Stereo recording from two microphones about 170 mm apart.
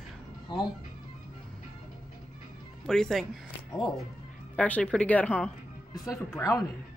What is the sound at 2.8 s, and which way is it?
Speech, centre (ahead or behind).